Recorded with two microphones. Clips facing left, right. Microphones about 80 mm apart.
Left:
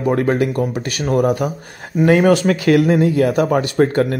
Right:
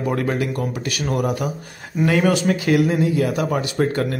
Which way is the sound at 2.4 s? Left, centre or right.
Left.